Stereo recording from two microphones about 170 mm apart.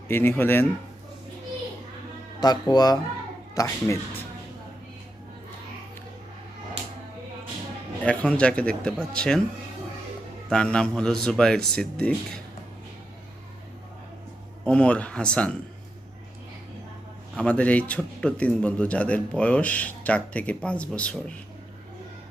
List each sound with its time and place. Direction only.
0.1 s a man's voice: 10° left (ahead or behind)
2.4 s speech: 25° left (ahead or behind)
8.0 s a man's voice: 5° left (ahead or behind)
10.5 s speech: 5° left (ahead or behind)
14.6 s a man's voice: 5° left (ahead or behind)
17.3 s a man's voice: 5° left (ahead or behind)